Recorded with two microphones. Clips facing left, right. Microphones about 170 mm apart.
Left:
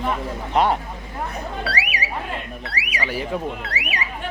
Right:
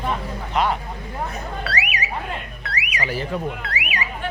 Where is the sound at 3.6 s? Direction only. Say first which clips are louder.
Even; 35° left (ahead or behind).